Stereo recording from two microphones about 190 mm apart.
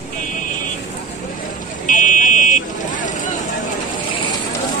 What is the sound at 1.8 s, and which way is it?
Vehicle, 40° left (ahead or behind).